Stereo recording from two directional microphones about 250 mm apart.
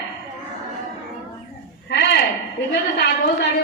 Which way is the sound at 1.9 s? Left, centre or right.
Left.